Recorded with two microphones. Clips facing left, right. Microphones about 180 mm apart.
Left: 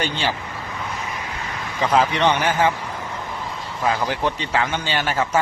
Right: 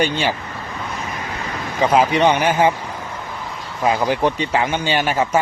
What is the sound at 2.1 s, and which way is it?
Speech, 15° right (ahead or behind).